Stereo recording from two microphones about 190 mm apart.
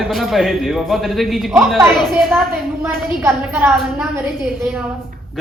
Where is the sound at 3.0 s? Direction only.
10° right (ahead or behind).